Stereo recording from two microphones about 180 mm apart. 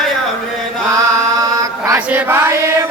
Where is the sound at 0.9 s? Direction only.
15° right (ahead or behind).